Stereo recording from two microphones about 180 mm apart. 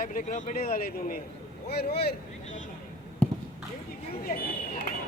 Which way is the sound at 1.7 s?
65° left (ahead or behind).